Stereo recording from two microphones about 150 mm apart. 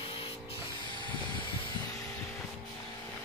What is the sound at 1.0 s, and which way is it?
Vehicle, 35° left (ahead or behind).